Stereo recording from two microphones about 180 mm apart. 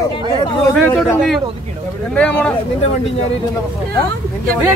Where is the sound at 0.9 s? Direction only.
Centre (ahead or behind).